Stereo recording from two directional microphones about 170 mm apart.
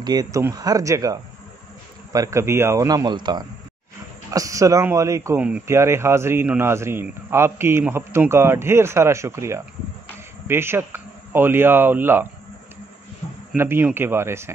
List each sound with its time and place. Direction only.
0.0 s speech: 25° right (ahead or behind)
13.6 s speech: 10° right (ahead or behind)